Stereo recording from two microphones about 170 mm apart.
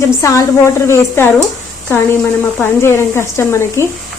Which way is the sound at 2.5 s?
15° left (ahead or behind).